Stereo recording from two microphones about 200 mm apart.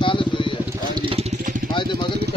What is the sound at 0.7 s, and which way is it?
Vehicle, 20° right (ahead or behind).